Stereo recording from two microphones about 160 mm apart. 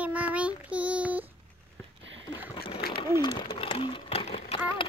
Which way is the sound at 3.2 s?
30° left (ahead or behind).